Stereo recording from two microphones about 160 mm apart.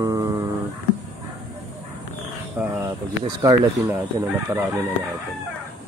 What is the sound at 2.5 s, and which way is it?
Speech, 10° right (ahead or behind).